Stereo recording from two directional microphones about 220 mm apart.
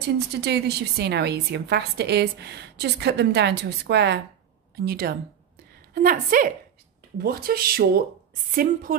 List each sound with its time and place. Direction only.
0.3 s a woman's voice: 50° right (ahead or behind)